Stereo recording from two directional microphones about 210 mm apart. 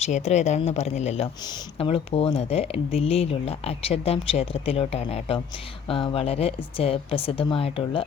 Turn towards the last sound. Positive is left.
turn(degrees=25)  # may be behind; listen again after turning